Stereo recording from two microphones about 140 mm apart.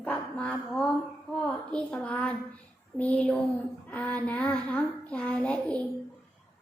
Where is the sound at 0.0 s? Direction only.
10° left (ahead or behind).